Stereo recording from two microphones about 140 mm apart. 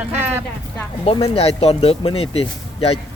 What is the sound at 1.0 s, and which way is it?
Speech, 45° left (ahead or behind).